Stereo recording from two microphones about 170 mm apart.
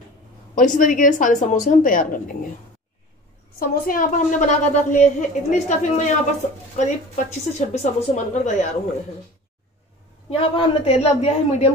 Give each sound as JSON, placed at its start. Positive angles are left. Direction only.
{"t": 0.6, "sound": "a woman's voice", "side_deg": 50}
{"t": 3.5, "sound": "a woman's voice", "side_deg": 60}
{"t": 10.3, "sound": "a man's voice", "side_deg": 35}